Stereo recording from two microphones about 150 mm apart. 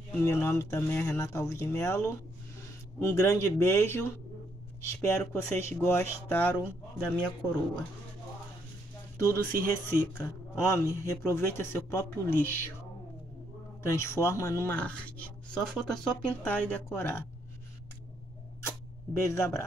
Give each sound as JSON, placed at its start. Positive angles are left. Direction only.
{"t": 0.2, "sound": "a man's voice", "side_deg": 15}
{"t": 9.3, "sound": "a man's voice", "side_deg": 15}
{"t": 13.8, "sound": "a man's voice", "side_deg": 20}
{"t": 18.6, "sound": "a sound", "side_deg": 20}